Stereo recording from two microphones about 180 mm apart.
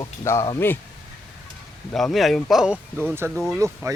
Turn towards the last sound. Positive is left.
turn(degrees=-15)  # may be behind; listen again after turning